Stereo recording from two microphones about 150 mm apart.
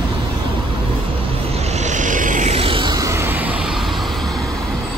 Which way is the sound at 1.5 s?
45° right (ahead or behind).